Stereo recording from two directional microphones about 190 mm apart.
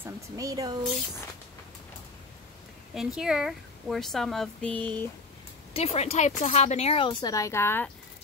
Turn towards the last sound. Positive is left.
turn(degrees=10)  # may be behind; listen again after turning